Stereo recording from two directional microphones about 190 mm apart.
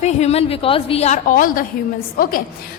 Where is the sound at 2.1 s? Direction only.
50° left (ahead or behind).